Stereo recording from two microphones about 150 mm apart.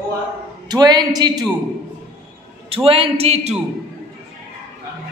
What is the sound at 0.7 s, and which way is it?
Speech, 25° right (ahead or behind).